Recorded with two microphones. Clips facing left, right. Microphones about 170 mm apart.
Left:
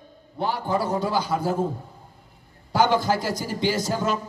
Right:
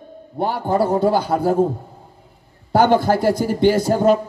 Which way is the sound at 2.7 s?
55° right (ahead or behind).